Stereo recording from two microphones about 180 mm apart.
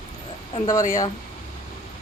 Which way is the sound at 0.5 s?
25° left (ahead or behind).